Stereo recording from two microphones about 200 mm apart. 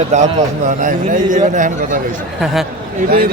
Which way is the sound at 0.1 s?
35° right (ahead or behind).